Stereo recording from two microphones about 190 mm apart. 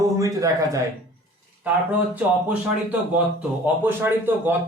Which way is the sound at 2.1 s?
10° right (ahead or behind).